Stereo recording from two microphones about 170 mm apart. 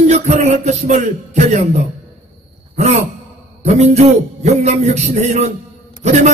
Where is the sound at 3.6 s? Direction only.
40° right (ahead or behind).